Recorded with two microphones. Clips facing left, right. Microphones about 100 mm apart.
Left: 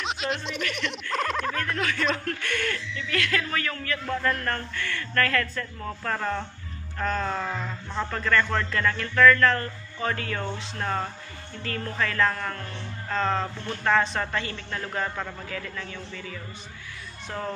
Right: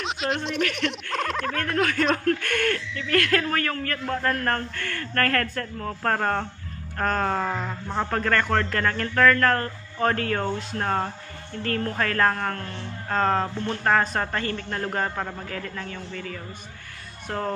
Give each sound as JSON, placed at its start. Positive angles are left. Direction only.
{"t": 0.0, "sound": "music", "side_deg": 0}
{"t": 1.1, "sound": "speech", "side_deg": 0}
{"t": 1.5, "sound": "a man's voice", "side_deg": -55}
{"t": 15.0, "sound": "a man's voice", "side_deg": -30}
{"t": 15.5, "sound": "a man's voice", "side_deg": -40}